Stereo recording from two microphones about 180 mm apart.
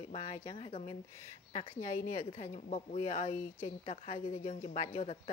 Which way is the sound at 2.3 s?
40° left (ahead or behind).